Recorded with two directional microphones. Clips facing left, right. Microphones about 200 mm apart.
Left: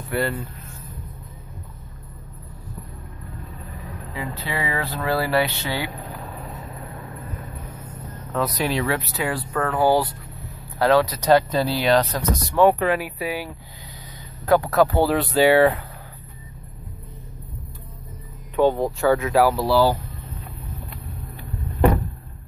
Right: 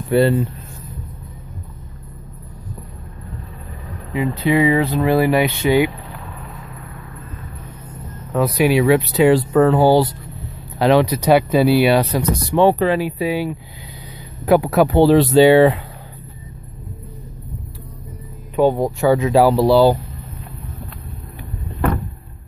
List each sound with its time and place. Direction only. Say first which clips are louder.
0.1 s speech: right 10 dB; 20° right (ahead or behind)
4.1 s speech: right 13 dB; 15° right (ahead or behind)
5.9 s vehicle: right 2 dB; 40° left (ahead or behind)
8.3 s speech: right 8 dB; 10° right (ahead or behind)
12.5 s speech: right 3 dB; 30° right (ahead or behind); by 15.0 s 15° right (ahead or behind)
15.0 s speech: right 8 dB; 25° right (ahead or behind)
18.6 s speech: right 3 dB; 15° right (ahead or behind)